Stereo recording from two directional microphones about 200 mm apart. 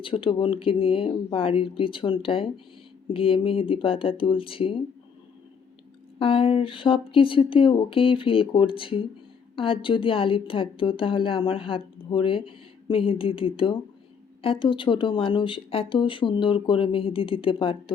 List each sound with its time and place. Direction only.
0.0 s a woman's voice: 25° left (ahead or behind)
6.1 s a woman's voice: 25° left (ahead or behind)